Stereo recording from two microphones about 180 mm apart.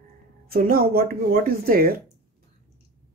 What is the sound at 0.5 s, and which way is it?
Speech, 55° right (ahead or behind).